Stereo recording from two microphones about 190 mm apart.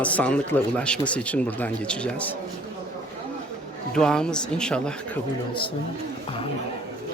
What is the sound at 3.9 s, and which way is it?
Speech, 5° left (ahead or behind).